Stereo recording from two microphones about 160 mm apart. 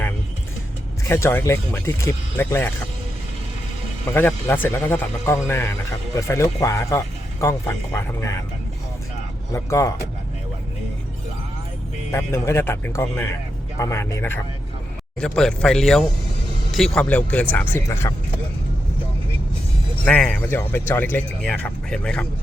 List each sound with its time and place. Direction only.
1.0 s speech: 15° left (ahead or behind)
4.1 s speech: 15° left (ahead or behind)
9.6 s speech: 20° left (ahead or behind)
12.1 s speech: 15° left (ahead or behind)
15.2 s speech: 5° left (ahead or behind)
20.1 s speech: 5° left (ahead or behind)